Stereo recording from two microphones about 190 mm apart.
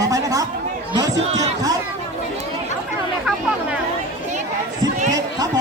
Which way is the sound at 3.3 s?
5° right (ahead or behind).